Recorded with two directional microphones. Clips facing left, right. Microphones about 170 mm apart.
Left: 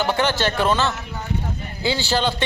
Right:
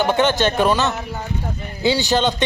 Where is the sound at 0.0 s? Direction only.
20° right (ahead or behind).